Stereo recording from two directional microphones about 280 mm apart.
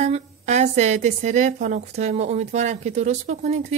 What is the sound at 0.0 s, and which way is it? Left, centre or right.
A woman's voice, right.